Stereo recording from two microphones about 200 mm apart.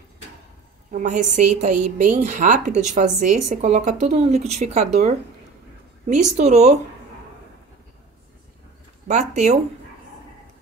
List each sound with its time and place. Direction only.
0.9 s a woman's voice: 40° right (ahead or behind)
9.0 s a woman's voice: 35° right (ahead or behind)